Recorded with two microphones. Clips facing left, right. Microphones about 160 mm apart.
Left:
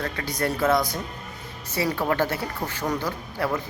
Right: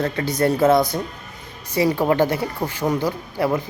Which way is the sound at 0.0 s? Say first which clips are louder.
Right 7 dB; 25° right (ahead or behind).